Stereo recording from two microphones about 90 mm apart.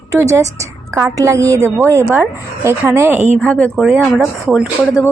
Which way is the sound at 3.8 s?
5° right (ahead or behind).